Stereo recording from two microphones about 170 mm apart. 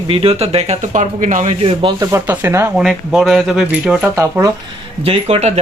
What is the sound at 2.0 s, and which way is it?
Speech, 15° right (ahead or behind).